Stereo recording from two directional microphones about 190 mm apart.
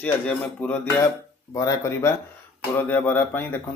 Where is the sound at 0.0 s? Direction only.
10° left (ahead or behind).